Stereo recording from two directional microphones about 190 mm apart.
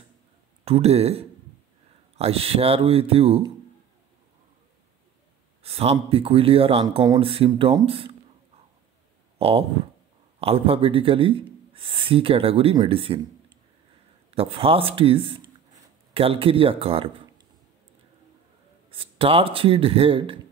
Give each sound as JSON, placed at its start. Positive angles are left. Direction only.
{"t": 0.7, "sound": "speech", "side_deg": -30}
{"t": 5.6, "sound": "speech", "side_deg": -30}
{"t": 9.4, "sound": "speech", "side_deg": -30}
{"t": 14.3, "sound": "speech", "side_deg": -30}
{"t": 18.9, "sound": "speech", "side_deg": -30}